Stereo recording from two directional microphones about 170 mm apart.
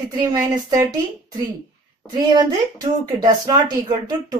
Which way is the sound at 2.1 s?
25° right (ahead or behind).